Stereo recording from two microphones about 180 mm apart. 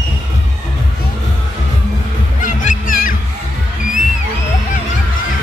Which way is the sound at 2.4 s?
45° left (ahead or behind).